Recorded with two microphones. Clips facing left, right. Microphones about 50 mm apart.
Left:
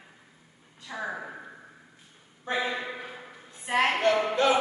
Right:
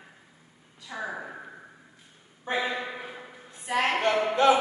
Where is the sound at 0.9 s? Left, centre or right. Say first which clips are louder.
Even; centre.